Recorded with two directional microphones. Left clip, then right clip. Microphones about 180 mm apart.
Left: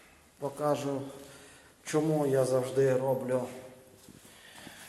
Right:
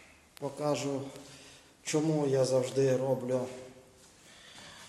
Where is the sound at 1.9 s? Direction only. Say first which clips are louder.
Left 1 dB; 15° right (ahead or behind).